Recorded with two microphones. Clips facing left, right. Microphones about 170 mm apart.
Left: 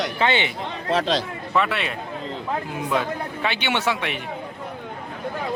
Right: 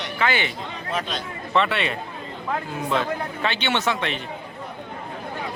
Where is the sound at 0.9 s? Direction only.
90° left.